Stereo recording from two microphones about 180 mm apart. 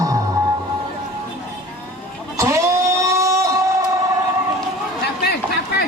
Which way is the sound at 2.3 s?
15° right (ahead or behind).